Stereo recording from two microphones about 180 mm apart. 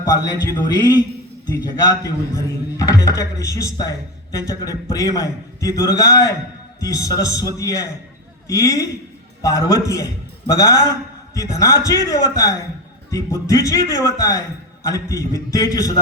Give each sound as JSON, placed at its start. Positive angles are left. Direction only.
{"t": 0.0, "sound": "a man's voice", "side_deg": 20}